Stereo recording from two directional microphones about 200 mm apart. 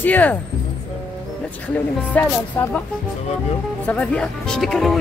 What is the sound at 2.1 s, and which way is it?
Speech, 5° left (ahead or behind).